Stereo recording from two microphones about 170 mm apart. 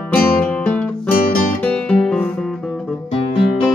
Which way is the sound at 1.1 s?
60° left (ahead or behind).